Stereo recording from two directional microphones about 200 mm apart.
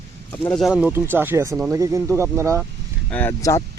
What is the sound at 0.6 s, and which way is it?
Speech, 5° right (ahead or behind).